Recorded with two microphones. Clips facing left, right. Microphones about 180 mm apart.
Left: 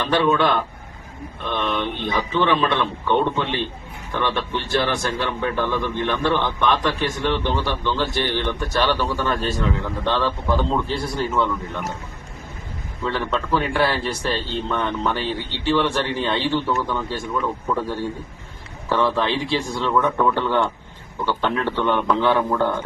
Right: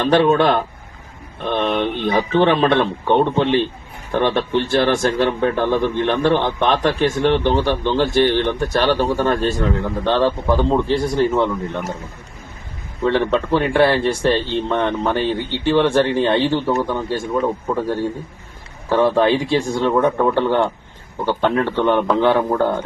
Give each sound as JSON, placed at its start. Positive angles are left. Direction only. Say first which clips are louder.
{"t": 0.0, "sound": "speech", "louder": "right 5 dB", "side_deg": -45}
{"t": 13.0, "sound": "a man's voice", "louder": "right 7 dB", "side_deg": -55}